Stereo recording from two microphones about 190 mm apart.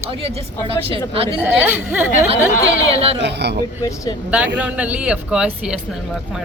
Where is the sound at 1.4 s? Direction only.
10° right (ahead or behind).